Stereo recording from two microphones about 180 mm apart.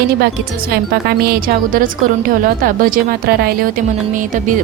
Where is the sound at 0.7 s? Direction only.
60° right (ahead or behind).